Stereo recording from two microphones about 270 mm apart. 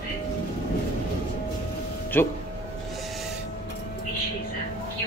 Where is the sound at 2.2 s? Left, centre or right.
Centre.